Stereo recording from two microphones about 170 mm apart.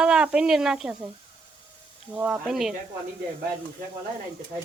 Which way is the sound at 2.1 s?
5° right (ahead or behind).